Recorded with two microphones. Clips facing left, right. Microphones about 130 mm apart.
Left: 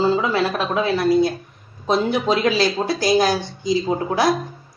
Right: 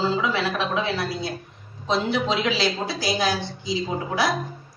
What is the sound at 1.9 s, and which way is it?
Speech, 50° left (ahead or behind).